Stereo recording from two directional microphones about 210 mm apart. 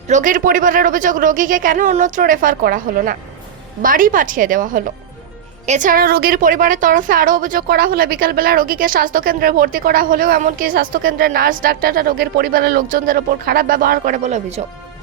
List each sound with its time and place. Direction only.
0.1 s a woman's voice: 40° right (ahead or behind)